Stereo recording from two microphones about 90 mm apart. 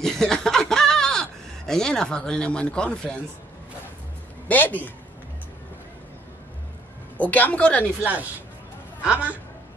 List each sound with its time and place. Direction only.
0.0 s a sound: 5° left (ahead or behind)
1.7 s speech: 5° left (ahead or behind)
4.5 s a man's voice: 20° left (ahead or behind)
7.2 s speech: 20° left (ahead or behind)
9.0 s a man's voice: 15° right (ahead or behind)